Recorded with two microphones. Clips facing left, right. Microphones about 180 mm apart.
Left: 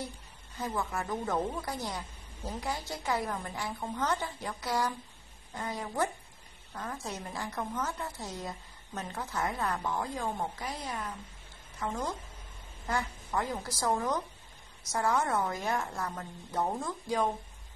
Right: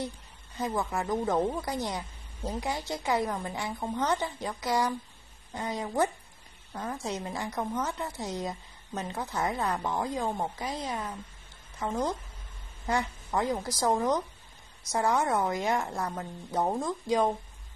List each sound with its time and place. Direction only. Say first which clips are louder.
0.6 s a woman's voice: right 4 dB; 20° right (ahead or behind)